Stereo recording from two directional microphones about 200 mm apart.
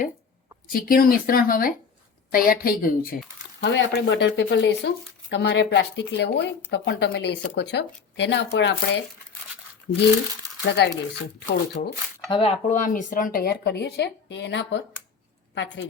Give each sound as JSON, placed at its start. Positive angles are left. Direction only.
{"t": 0.7, "sound": "speech", "side_deg": 45}
{"t": 3.6, "sound": "speech", "side_deg": 65}
{"t": 12.3, "sound": "speech", "side_deg": 30}